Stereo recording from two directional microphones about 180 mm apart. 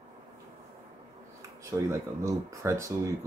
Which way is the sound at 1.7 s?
15° right (ahead or behind).